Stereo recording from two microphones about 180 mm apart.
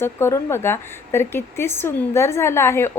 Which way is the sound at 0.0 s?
15° left (ahead or behind).